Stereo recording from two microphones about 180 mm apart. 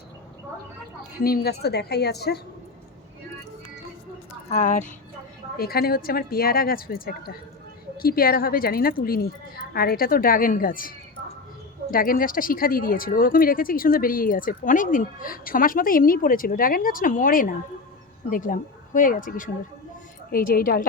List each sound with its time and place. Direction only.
1.2 s a woman's voice: 60° left (ahead or behind)
4.4 s speech: 45° left (ahead or behind)
5.5 s a woman's voice: 55° left (ahead or behind)